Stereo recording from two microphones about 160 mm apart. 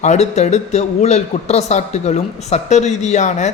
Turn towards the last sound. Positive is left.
turn(degrees=45)  # may be behind; listen again after turning